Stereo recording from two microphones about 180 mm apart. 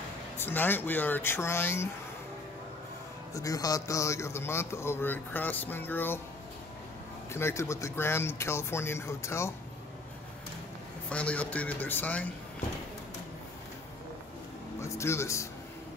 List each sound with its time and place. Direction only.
0.4 s a man's voice: 10° left (ahead or behind)
3.3 s a man's voice: 20° left (ahead or behind)
7.3 s a man's voice: 15° left (ahead or behind)
11.1 s a man's voice: 5° left (ahead or behind)
14.8 s a man's voice: 15° left (ahead or behind)